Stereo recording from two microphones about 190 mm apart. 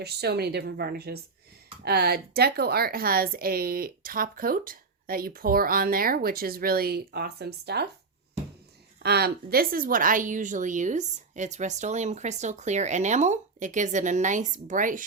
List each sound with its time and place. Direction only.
0.0 s a woman's voice: 60° right (ahead or behind)
9.0 s a woman's voice: 55° right (ahead or behind)